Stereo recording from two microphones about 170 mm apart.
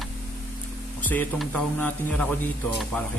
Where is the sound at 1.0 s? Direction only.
10° left (ahead or behind).